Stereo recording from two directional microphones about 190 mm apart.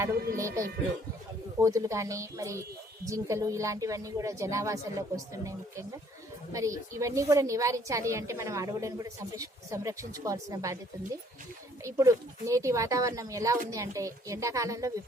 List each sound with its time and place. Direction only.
0.3 s a woman's voice: 15° right (ahead or behind)
11.8 s a woman's voice: 15° right (ahead or behind)